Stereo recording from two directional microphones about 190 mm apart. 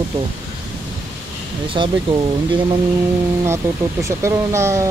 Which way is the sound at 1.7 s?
25° right (ahead or behind).